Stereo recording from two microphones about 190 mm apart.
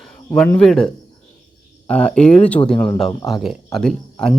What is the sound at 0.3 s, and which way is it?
Speech, 5° left (ahead or behind).